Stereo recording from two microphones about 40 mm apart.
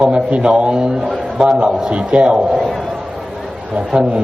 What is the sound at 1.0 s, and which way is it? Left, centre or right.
Speech, centre.